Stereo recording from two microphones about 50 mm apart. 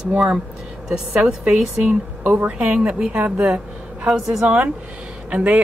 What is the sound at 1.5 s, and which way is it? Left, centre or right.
Speech, centre.